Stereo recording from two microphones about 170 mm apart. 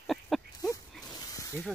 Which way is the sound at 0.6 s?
20° left (ahead or behind).